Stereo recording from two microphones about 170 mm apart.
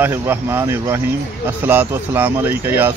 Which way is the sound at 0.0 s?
10° right (ahead or behind).